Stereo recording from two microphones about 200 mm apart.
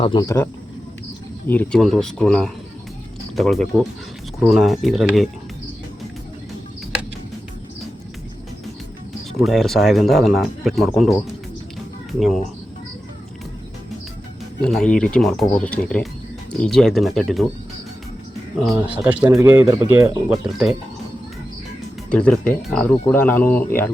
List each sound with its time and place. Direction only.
0.0 s speech: 20° left (ahead or behind)
1.5 s speech: 5° left (ahead or behind)
9.4 s speech: centre (ahead or behind)
14.6 s speech: 5° left (ahead or behind)
18.7 s speech: 10° right (ahead or behind)
20.5 s speech: centre (ahead or behind)
22.1 s speech: 5° left (ahead or behind)